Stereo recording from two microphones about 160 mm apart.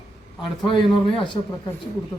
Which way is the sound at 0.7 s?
30° left (ahead or behind).